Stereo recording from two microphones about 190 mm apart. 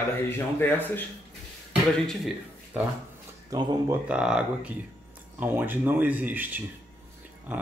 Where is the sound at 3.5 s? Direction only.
20° right (ahead or behind).